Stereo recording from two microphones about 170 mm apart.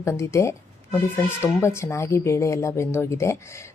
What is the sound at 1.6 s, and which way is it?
A woman's voice, 15° left (ahead or behind).